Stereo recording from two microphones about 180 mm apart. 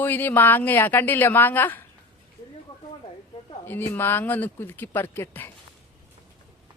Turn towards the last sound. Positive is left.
turn(degrees=10)  # may be behind; listen again after turning